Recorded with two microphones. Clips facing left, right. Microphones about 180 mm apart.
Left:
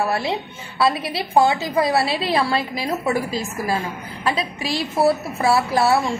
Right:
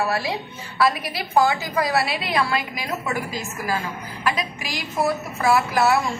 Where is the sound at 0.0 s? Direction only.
25° left (ahead or behind).